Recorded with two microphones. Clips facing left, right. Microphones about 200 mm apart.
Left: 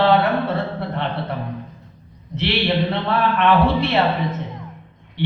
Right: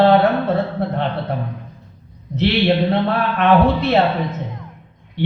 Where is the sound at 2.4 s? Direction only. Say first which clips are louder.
Right 4 dB; 45° right (ahead or behind).